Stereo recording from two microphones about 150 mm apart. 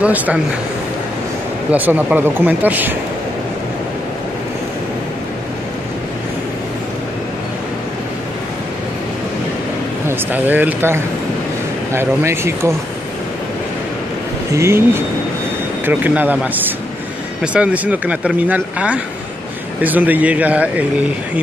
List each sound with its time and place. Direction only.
0.0 s speech: 10° right (ahead or behind)
1.7 s speech: 10° right (ahead or behind)
10.0 s speech: 10° right (ahead or behind)
14.5 s speech: 15° right (ahead or behind)